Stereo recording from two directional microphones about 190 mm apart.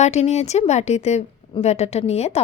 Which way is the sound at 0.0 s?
35° left (ahead or behind).